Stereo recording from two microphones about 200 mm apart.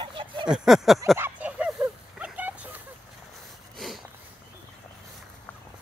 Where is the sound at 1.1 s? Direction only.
10° right (ahead or behind).